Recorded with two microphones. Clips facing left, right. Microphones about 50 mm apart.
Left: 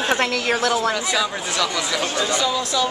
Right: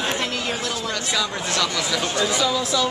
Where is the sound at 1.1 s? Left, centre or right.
Centre.